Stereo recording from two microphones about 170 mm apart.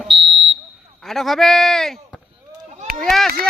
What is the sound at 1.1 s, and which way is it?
Speech, centre (ahead or behind).